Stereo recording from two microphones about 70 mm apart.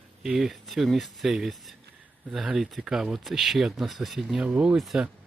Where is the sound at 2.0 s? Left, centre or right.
Right.